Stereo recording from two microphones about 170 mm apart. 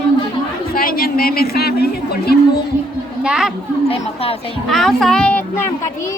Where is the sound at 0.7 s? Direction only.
60° left (ahead or behind).